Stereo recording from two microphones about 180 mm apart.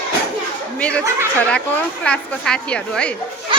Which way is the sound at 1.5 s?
5° left (ahead or behind).